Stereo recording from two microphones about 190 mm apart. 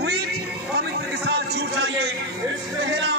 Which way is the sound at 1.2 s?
60° right (ahead or behind).